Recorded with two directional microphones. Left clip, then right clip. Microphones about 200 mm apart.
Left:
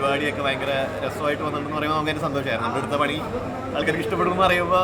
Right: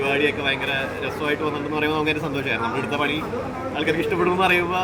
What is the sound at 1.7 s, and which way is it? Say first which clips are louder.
Speech: right 1 dB; 20° left (ahead or behind).